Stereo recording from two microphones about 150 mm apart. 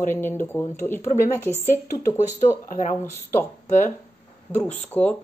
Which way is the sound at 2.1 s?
50° left (ahead or behind).